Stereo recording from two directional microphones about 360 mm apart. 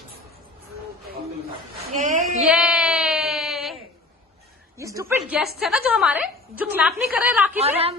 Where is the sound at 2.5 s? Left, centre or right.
Centre.